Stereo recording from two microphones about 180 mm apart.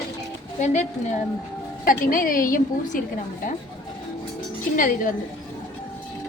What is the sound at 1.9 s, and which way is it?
A woman's voice, 50° left (ahead or behind).